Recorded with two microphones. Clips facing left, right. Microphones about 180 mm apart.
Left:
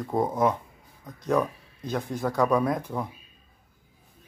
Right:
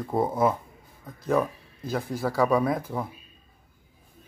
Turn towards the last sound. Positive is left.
turn(degrees=0)  # may be behind; listen again after turning